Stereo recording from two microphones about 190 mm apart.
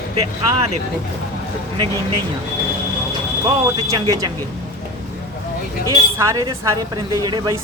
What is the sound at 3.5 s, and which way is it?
Speech, 20° right (ahead or behind).